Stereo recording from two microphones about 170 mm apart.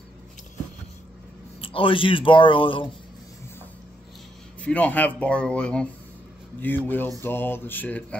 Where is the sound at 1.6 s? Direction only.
30° left (ahead or behind).